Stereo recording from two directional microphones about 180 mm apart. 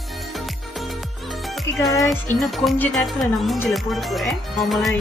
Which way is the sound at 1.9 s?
15° left (ahead or behind).